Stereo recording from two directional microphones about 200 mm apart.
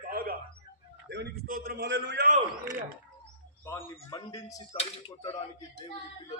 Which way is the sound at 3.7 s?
15° left (ahead or behind).